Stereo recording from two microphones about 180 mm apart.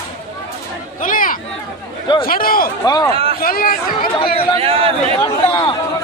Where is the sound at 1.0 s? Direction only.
50° left (ahead or behind).